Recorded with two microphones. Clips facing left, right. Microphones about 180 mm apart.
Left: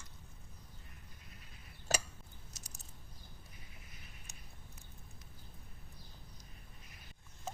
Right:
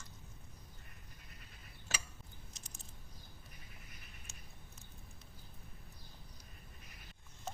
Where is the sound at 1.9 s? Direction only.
40° left (ahead or behind).